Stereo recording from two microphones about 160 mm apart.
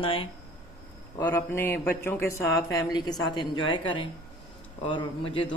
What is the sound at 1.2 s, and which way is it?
A man's voice, 15° left (ahead or behind).